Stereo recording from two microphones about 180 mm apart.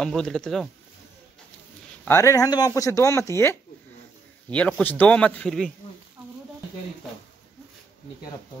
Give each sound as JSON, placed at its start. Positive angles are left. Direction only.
{"t": 0.0, "sound": "a man's voice", "side_deg": 0}
{"t": 2.0, "sound": "a man's voice", "side_deg": 15}